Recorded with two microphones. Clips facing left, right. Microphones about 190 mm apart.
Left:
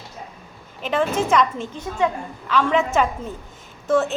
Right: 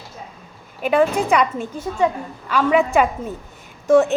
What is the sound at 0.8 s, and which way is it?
A woman's voice, 10° right (ahead or behind).